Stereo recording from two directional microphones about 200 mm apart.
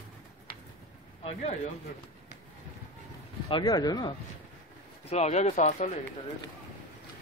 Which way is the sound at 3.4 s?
20° left (ahead or behind).